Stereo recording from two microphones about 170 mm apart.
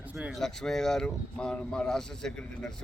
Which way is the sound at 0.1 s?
5° right (ahead or behind).